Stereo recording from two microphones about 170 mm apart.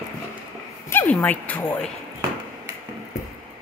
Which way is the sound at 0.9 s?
10° left (ahead or behind).